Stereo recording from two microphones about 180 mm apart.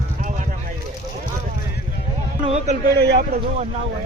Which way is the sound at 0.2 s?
45° right (ahead or behind).